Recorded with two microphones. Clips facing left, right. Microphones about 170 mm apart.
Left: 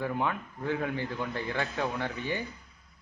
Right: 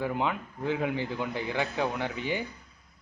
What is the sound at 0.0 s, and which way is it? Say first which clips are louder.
A man's voice: right 1 dB; 15° right (ahead or behind).